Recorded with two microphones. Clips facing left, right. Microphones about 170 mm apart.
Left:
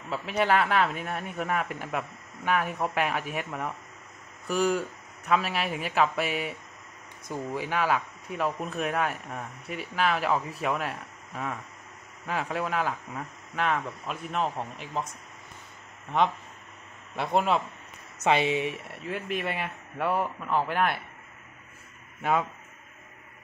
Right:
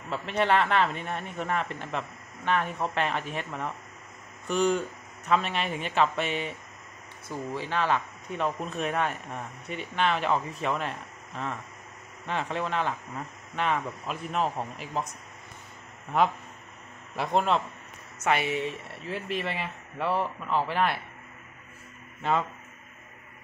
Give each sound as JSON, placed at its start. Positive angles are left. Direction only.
{"t": 0.1, "sound": "speech", "side_deg": 5}
{"t": 16.1, "sound": "speech", "side_deg": 0}
{"t": 18.2, "sound": "speech", "side_deg": 20}
{"t": 19.0, "sound": "speech", "side_deg": 5}
{"t": 22.2, "sound": "speech", "side_deg": 10}